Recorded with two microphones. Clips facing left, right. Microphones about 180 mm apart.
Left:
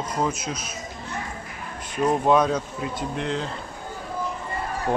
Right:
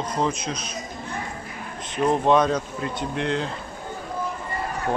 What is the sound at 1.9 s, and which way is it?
Speech, 5° left (ahead or behind).